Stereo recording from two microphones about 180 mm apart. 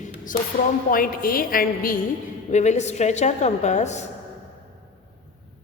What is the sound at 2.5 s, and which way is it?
Speech, 40° left (ahead or behind).